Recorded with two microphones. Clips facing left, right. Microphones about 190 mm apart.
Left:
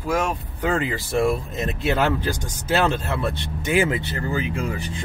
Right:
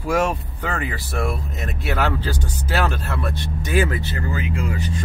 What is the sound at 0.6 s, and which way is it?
Speech, 20° left (ahead or behind).